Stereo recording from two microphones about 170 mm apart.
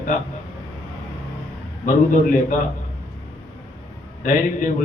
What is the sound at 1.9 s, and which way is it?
Speech, 50° left (ahead or behind).